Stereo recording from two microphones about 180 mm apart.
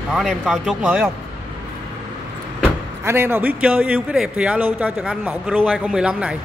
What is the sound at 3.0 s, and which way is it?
A man's voice, 15° right (ahead or behind).